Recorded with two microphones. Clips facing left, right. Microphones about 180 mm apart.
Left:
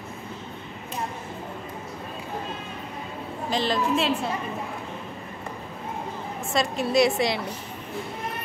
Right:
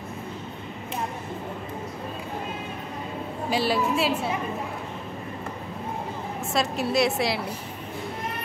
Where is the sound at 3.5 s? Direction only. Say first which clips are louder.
Even; 10° right (ahead or behind).